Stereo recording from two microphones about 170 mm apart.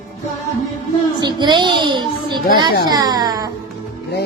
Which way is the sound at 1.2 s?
25° right (ahead or behind).